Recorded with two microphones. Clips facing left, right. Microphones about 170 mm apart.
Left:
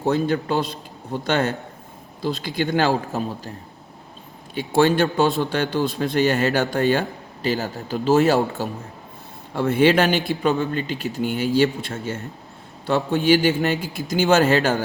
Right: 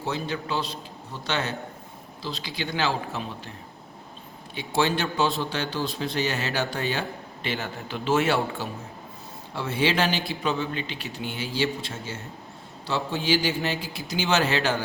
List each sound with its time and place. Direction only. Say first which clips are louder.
0.0 s a man's voice: left 9 dB; 50° left (ahead or behind)
4.5 s a man's voice: left 7 dB; 50° left (ahead or behind)
7.4 s a man's voice: left 7 dB; 40° left (ahead or behind)
9.6 s a man's voice: left 8 dB; 55° left (ahead or behind)